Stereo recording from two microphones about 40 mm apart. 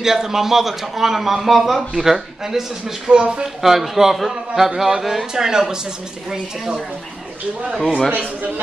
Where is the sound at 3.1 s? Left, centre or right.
Right.